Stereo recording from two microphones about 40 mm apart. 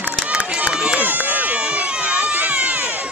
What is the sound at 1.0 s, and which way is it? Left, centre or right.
Run, right.